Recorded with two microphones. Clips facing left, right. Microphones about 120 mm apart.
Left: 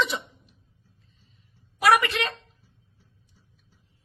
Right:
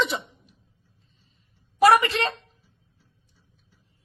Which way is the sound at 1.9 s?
30° right (ahead or behind).